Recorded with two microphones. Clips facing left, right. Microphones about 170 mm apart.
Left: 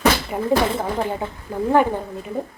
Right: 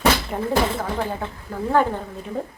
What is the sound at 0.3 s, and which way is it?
Speech, 5° left (ahead or behind).